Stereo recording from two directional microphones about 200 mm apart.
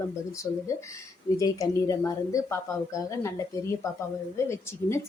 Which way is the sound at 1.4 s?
15° left (ahead or behind).